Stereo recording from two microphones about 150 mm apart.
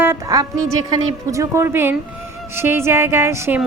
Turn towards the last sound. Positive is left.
turn(degrees=-15)  # may be behind; listen again after turning